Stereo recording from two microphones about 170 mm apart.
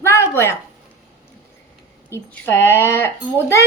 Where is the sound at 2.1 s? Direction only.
15° left (ahead or behind).